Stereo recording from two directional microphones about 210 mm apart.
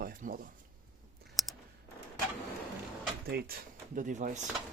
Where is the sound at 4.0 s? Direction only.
35° right (ahead or behind).